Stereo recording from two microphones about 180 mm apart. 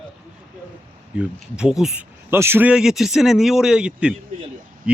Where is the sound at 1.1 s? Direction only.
5° right (ahead or behind).